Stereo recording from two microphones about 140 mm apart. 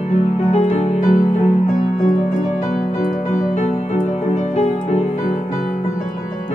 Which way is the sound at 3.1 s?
65° left (ahead or behind).